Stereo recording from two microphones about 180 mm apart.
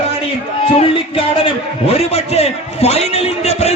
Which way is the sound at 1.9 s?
35° left (ahead or behind).